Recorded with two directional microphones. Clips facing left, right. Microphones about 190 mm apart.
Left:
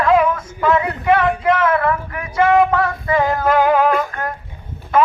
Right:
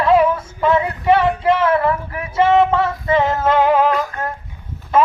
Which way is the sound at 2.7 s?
25° right (ahead or behind).